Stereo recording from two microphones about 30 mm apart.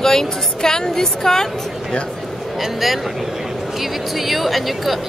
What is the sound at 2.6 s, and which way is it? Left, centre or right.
Speech, centre.